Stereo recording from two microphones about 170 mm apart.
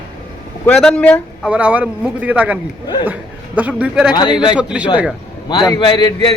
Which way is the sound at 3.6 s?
10° right (ahead or behind).